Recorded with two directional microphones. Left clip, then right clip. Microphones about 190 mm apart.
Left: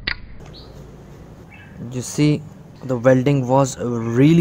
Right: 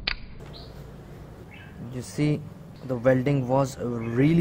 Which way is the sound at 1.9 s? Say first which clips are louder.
Left 8 dB; 25° left (ahead or behind).